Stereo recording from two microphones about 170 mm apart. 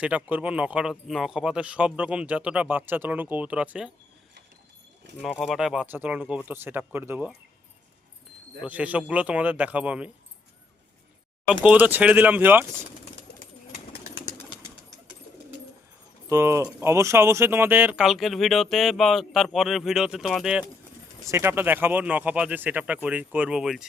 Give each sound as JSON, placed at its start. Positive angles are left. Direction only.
{"t": 0.0, "sound": "speech", "side_deg": -10}
{"t": 5.3, "sound": "speech", "side_deg": 0}
{"t": 8.6, "sound": "speech", "side_deg": -10}
{"t": 11.6, "sound": "speech", "side_deg": -10}
{"t": 16.3, "sound": "speech", "side_deg": -15}
{"t": 21.2, "sound": "speech", "side_deg": -15}